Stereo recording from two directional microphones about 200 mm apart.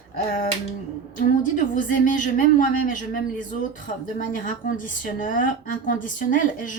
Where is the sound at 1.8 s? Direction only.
40° left (ahead or behind).